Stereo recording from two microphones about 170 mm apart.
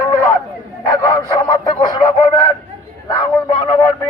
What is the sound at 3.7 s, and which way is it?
Radio, 10° left (ahead or behind).